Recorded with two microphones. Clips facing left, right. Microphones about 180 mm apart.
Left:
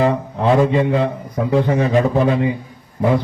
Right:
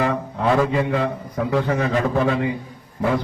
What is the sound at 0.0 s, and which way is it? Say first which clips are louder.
A man's voice: left 4 dB; 25° left (ahead or behind).